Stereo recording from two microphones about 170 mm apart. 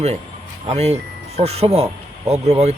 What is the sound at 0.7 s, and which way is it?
A man's voice, 40° right (ahead or behind).